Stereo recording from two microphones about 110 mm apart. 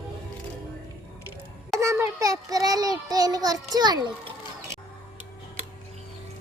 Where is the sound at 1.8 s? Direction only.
25° right (ahead or behind).